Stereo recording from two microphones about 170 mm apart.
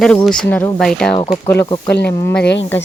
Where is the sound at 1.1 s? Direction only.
35° left (ahead or behind).